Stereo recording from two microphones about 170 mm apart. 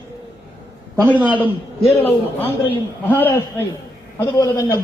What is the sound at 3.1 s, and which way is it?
A man's voice, 10° left (ahead or behind).